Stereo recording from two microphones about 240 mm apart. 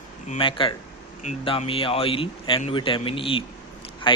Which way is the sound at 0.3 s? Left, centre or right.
Left.